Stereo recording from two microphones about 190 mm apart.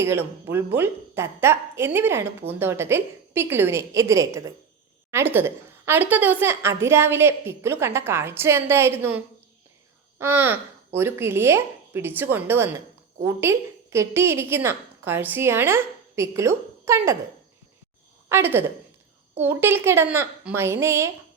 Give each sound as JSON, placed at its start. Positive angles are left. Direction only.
{"t": 0.0, "sound": "a woman's voice", "side_deg": -10}
{"t": 18.3, "sound": "a woman's voice", "side_deg": -10}